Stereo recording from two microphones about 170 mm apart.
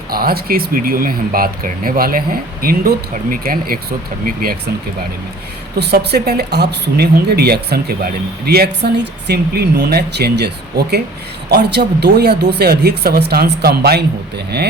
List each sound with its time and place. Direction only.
0.1 s speech: 60° right (ahead or behind)
5.7 s speech: 75° right (ahead or behind)